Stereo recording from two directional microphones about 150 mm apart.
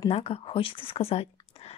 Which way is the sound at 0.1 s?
40° left (ahead or behind).